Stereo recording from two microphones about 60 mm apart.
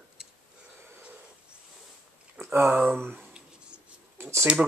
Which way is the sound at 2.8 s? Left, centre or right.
Right.